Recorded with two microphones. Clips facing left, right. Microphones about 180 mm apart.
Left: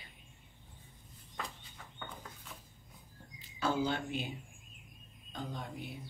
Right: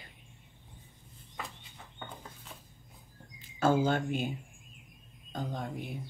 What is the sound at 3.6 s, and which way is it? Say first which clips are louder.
Speech: right 6 dB; 45° right (ahead or behind).